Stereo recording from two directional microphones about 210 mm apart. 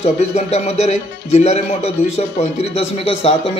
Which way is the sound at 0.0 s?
30° left (ahead or behind).